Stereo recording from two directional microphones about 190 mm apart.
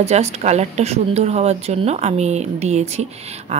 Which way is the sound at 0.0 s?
35° right (ahead or behind).